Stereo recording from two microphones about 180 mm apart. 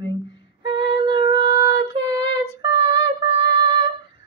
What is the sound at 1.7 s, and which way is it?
Female singing, 25° right (ahead or behind).